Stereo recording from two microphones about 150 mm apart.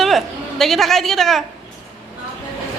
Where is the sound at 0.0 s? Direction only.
Centre (ahead or behind).